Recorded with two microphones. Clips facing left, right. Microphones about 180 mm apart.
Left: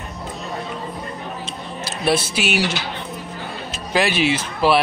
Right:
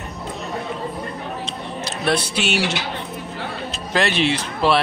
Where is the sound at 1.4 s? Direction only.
5° left (ahead or behind).